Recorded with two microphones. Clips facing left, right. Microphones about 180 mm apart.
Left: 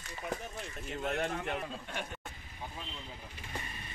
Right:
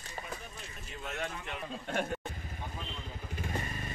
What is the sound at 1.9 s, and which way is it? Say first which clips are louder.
Speech: right 7 dB; 45° right (ahead or behind).